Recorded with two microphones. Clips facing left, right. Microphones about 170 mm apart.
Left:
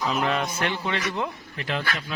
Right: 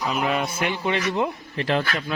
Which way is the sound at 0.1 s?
10° right (ahead or behind).